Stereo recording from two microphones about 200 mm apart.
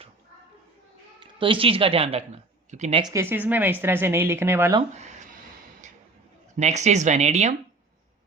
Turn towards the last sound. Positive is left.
turn(degrees=-35)  # may be behind; listen again after turning